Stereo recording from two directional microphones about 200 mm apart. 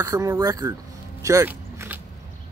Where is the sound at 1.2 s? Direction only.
15° right (ahead or behind).